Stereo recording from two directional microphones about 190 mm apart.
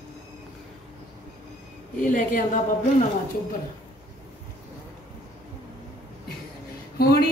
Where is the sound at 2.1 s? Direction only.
45° left (ahead or behind).